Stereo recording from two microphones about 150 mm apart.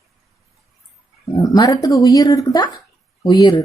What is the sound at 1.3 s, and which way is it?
A woman's voice, 25° left (ahead or behind).